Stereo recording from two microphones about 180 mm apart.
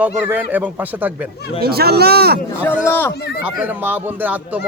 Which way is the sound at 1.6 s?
60° right (ahead or behind).